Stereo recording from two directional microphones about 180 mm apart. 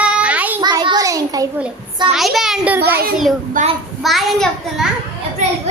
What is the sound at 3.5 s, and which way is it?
Speech, 40° right (ahead or behind).